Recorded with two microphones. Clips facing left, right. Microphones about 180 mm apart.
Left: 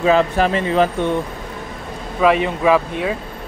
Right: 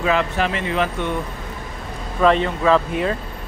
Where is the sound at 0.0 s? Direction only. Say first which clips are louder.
Left 5 dB; 35° left (ahead or behind).